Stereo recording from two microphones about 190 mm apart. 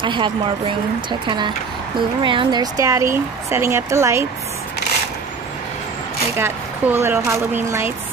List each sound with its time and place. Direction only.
0.0 s a woman's voice: 25° right (ahead or behind)
6.3 s speech: 15° right (ahead or behind)